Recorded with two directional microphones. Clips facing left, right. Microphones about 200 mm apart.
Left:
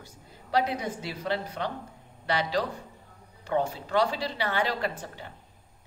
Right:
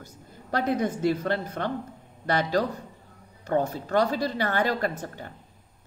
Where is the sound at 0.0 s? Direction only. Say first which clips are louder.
Right 4 dB; 50° right (ahead or behind).